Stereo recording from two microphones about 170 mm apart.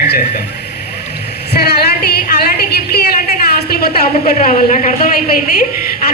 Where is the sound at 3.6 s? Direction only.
65° left (ahead or behind).